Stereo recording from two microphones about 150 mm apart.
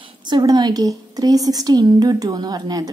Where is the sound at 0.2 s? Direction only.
30° right (ahead or behind).